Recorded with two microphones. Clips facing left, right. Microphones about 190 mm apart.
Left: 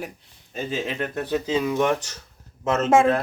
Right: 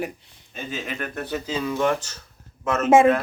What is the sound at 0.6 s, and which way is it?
Speech, 30° left (ahead or behind).